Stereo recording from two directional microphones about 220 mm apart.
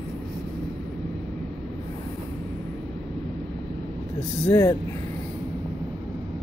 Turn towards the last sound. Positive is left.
turn(degrees=15)  # may be behind; listen again after turning